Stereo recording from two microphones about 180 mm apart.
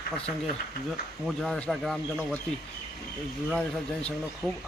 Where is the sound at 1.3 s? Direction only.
5° left (ahead or behind).